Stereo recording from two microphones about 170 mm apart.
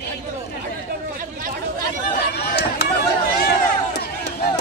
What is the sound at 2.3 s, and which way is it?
Speech, 70° left (ahead or behind).